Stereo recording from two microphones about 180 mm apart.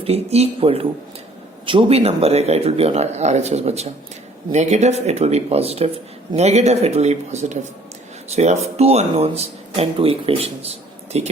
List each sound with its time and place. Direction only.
0.0 s speech: 35° right (ahead or behind)